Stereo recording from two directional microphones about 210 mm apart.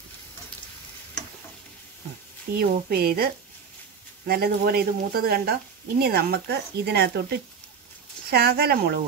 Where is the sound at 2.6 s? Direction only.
45° right (ahead or behind).